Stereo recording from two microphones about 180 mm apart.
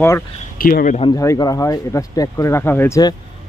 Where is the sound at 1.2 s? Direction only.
15° left (ahead or behind).